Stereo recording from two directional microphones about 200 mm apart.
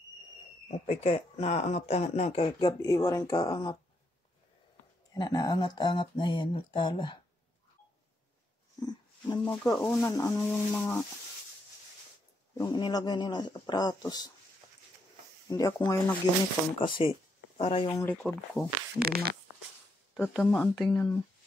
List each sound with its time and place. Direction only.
0.7 s speech: 35° left (ahead or behind)
5.1 s speech: 20° left (ahead or behind)
8.8 s speech: 20° left (ahead or behind)
9.4 s speech: 10° left (ahead or behind)
12.5 s speech: 20° left (ahead or behind)
15.4 s speech: 15° left (ahead or behind)
17.8 s speech: 15° left (ahead or behind)
18.1 s speech: 5° left (ahead or behind)
18.9 s speech: 50° right (ahead or behind)
20.2 s speech: 10° left (ahead or behind)